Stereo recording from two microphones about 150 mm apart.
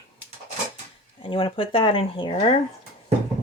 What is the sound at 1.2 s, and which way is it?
Speech, 35° left (ahead or behind).